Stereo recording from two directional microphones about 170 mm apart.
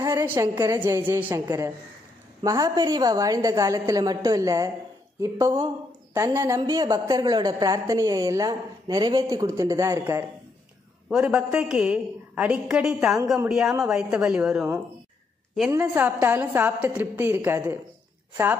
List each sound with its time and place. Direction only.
0.0 s a woman's voice: 15° right (ahead or behind)
15.7 s a woman's voice: 10° right (ahead or behind)